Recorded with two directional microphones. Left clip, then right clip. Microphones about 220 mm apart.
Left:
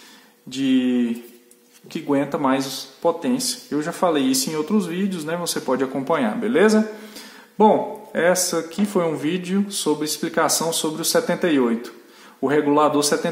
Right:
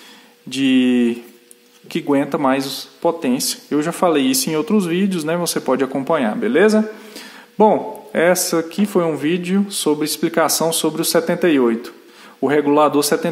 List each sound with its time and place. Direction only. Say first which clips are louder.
0.5 s speech: right 5 dB; 35° right (ahead or behind)